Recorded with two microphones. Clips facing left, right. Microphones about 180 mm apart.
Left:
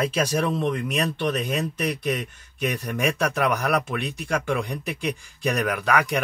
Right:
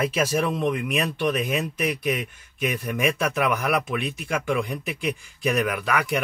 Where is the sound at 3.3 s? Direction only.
40° left (ahead or behind).